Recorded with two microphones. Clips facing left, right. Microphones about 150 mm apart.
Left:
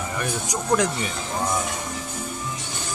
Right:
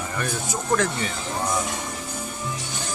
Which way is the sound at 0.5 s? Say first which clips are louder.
Left 1 dB; 15° left (ahead or behind).